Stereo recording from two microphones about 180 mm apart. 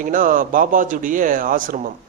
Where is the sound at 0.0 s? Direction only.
50° right (ahead or behind).